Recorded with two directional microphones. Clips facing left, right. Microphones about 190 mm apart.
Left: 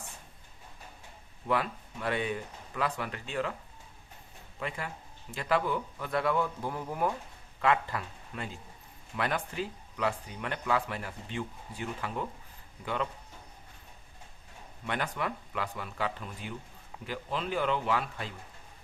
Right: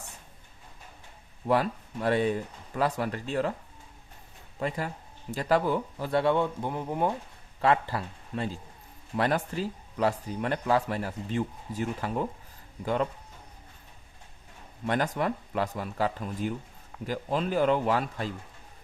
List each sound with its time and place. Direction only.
1.5 s speech: 40° right (ahead or behind)
5.3 s speech: 40° right (ahead or behind)
14.8 s speech: 40° right (ahead or behind)